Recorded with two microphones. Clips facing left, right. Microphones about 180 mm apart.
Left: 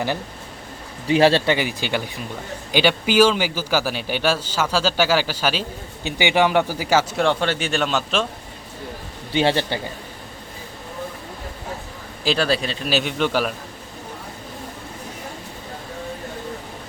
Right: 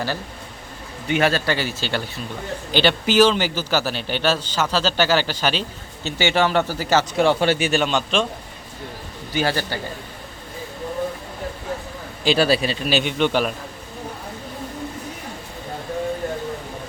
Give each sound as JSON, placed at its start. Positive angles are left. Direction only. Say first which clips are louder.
{"t": 1.0, "sound": "a man's voice", "louder": "left 4 dB", "side_deg": 30}
{"t": 1.5, "sound": "a man's voice", "louder": "left 1 dB", "side_deg": 15}
{"t": 7.2, "sound": "a man's voice", "louder": "right 3 dB", "side_deg": -5}
{"t": 9.3, "sound": "a man's voice", "louder": "left 3 dB", "side_deg": 25}
{"t": 12.2, "sound": "a man's voice", "louder": "right 3 dB", "side_deg": -5}